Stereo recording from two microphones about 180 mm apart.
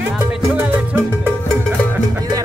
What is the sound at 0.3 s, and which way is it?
Music, 10° right (ahead or behind).